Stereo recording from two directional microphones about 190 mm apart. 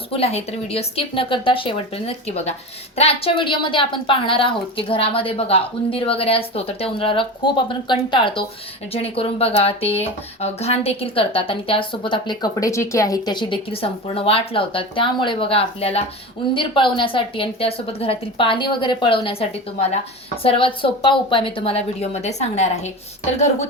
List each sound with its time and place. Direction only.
0.1 s a woman's voice: 30° left (ahead or behind)